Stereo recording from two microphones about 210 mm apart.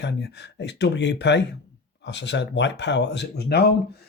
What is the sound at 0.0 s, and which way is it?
Speech, 55° left (ahead or behind).